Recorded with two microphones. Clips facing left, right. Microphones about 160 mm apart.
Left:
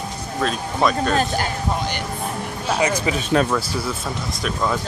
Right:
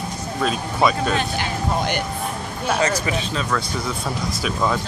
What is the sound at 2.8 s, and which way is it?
Speech, 15° left (ahead or behind).